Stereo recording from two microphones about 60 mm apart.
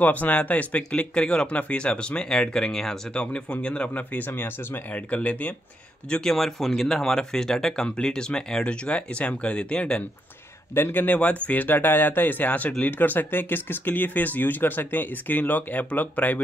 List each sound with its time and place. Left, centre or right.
0.0 s speech: left
6.0 s speech: centre
10.7 s speech: left